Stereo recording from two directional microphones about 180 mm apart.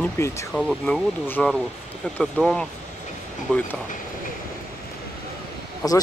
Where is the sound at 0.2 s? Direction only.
15° left (ahead or behind).